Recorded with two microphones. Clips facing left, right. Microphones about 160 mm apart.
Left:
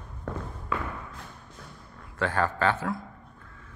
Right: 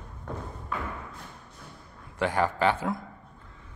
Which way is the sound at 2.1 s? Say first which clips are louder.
Right 1 dB; 15° right (ahead or behind).